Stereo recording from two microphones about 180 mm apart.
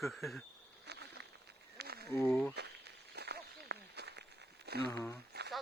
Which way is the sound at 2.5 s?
65° right (ahead or behind).